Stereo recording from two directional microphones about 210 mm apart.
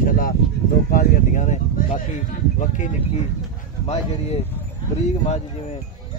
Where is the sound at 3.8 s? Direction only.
30° left (ahead or behind).